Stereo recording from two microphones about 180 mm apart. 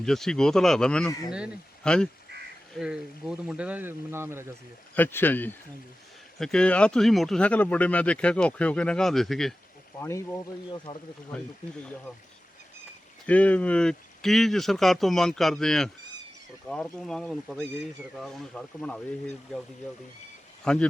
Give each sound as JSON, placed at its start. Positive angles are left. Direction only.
{"t": 0.0, "sound": "speech", "side_deg": 5}
{"t": 4.9, "sound": "speech", "side_deg": 10}
{"t": 10.0, "sound": "speech", "side_deg": 15}
{"t": 10.9, "sound": "speech", "side_deg": 25}
{"t": 13.2, "sound": "speech", "side_deg": 10}
{"t": 20.7, "sound": "speech", "side_deg": 5}